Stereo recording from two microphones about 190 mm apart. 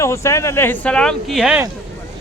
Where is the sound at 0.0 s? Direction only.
15° left (ahead or behind); by 1.6 s 5° right (ahead or behind).